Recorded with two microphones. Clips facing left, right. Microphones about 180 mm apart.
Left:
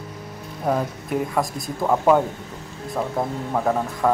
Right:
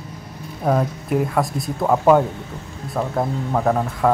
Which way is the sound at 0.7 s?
Centre (ahead or behind).